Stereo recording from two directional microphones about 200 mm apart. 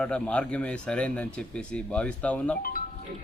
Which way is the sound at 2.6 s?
45° left (ahead or behind).